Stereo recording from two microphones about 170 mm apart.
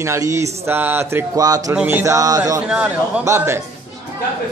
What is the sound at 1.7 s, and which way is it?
A man's voice, 10° right (ahead or behind).